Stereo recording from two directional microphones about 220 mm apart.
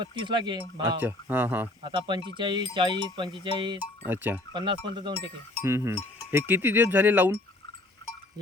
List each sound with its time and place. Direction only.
0.0 s speech: 20° right (ahead or behind)
0.9 s speech: 10° right (ahead or behind)
1.8 s speech: 20° right (ahead or behind)
3.8 s speech: 10° right (ahead or behind)
4.5 s speech: 20° right (ahead or behind)
5.6 s speech: 10° right (ahead or behind)